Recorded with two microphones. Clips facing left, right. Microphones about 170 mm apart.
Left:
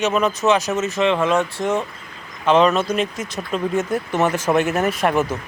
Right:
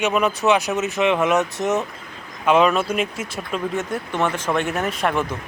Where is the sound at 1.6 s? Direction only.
5° right (ahead or behind).